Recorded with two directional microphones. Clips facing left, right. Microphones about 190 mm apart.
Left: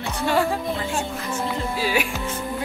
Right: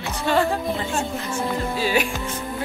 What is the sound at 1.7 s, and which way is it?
Speech, 5° left (ahead or behind).